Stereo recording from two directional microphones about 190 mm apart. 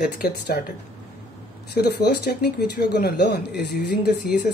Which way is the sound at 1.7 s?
60° left (ahead or behind).